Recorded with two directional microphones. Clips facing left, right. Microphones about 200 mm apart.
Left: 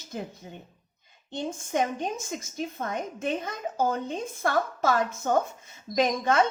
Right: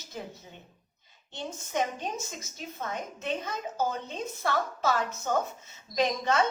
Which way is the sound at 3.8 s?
50° left (ahead or behind).